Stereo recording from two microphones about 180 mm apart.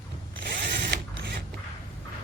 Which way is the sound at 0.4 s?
70° right (ahead or behind).